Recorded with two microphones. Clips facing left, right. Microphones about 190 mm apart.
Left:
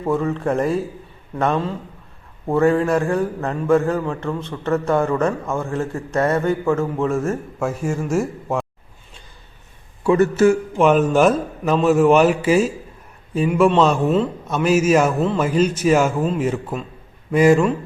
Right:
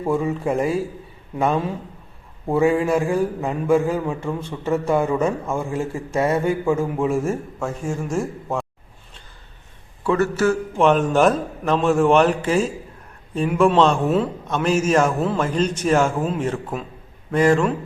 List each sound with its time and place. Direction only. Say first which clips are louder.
0.0 s a man's voice: left 1 dB; 10° right (ahead or behind)
7.6 s a man's voice: left 3 dB; 5° left (ahead or behind)
10.0 s a man's voice: left 4 dB; 15° left (ahead or behind)
10.8 s a man's voice: even; 5° left (ahead or behind)